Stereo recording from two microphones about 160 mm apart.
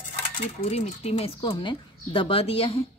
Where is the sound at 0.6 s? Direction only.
40° left (ahead or behind).